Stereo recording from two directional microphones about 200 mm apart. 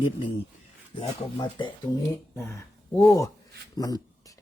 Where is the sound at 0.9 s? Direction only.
25° left (ahead or behind).